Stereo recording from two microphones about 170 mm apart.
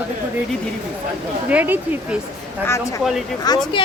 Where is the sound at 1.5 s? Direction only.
10° right (ahead or behind).